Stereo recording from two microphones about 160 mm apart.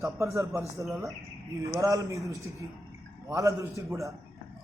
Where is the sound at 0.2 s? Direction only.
20° right (ahead or behind).